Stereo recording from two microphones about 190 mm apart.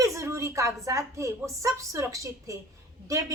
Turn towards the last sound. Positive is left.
turn(degrees=-15)  # may be behind; listen again after turning